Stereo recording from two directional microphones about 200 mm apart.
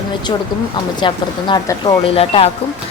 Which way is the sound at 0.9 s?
20° left (ahead or behind).